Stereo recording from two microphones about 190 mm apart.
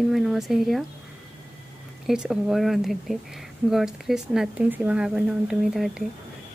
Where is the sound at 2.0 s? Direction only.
5° right (ahead or behind).